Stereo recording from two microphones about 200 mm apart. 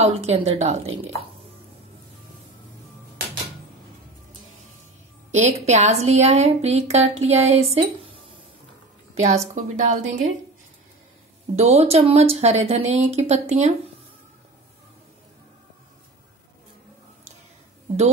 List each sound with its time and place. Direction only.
0.0 s a woman's voice: 30° right (ahead or behind)
5.3 s a woman's voice: 35° right (ahead or behind)
9.2 s a woman's voice: 35° right (ahead or behind)
11.5 s a woman's voice: 30° right (ahead or behind)